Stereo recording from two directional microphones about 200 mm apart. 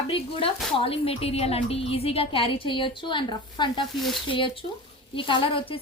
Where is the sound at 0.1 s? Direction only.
25° left (ahead or behind).